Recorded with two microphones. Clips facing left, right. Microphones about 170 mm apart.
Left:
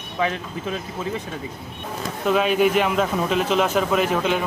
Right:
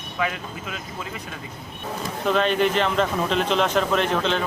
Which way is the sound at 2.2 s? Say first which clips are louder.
Left 2 dB; 5° left (ahead or behind).